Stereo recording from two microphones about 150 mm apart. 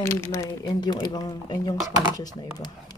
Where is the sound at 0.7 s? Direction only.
30° left (ahead or behind).